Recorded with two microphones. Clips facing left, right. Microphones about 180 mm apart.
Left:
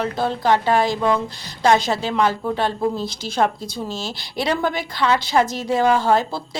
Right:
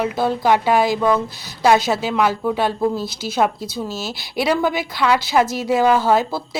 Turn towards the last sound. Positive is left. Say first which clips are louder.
# right 1 dB
turn(degrees=-5)  # may be behind; listen again after turning